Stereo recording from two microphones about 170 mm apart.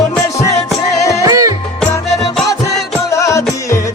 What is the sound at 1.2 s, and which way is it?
Music, 20° right (ahead or behind).